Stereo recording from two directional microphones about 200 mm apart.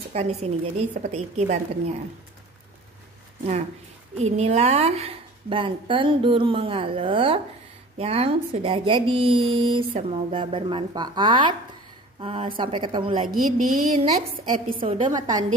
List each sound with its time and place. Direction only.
0.1 s a woman's voice: 35° right (ahead or behind)
4.2 s speech: 35° right (ahead or behind)
13.3 s a woman's voice: 45° right (ahead or behind)
14.8 s speech: 25° right (ahead or behind)